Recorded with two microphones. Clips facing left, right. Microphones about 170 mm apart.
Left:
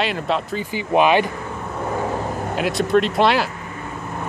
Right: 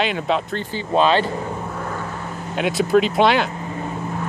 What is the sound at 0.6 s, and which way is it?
Speech, 15° left (ahead or behind).